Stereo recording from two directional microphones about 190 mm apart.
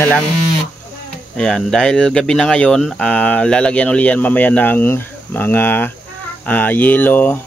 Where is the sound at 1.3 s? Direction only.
5° left (ahead or behind).